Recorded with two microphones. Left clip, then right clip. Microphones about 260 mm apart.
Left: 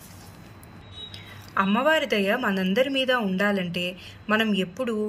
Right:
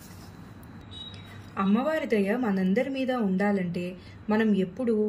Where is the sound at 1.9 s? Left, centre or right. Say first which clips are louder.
Left 5 dB; centre.